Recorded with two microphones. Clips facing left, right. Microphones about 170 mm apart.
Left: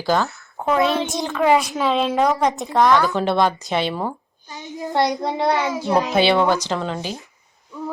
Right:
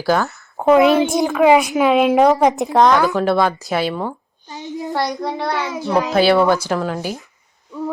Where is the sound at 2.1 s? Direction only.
20° right (ahead or behind).